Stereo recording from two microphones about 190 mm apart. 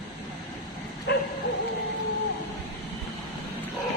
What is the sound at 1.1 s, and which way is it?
Dog, 60° left (ahead or behind).